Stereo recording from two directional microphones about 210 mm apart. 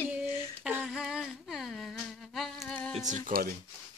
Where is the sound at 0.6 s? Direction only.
5° right (ahead or behind).